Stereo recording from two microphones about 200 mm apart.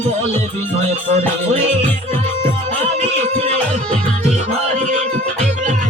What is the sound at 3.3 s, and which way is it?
Music, 35° right (ahead or behind).